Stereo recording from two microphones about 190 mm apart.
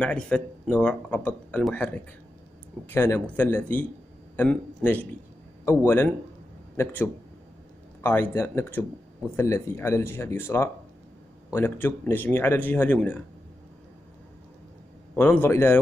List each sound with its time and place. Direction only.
0.0 s speech: 5° left (ahead or behind)
2.9 s speech: 10° left (ahead or behind)
15.1 s speech: 10° left (ahead or behind)